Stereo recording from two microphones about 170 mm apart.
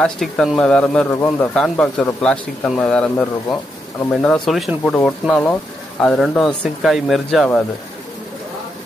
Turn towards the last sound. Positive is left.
turn(degrees=0)  # may be behind; listen again after turning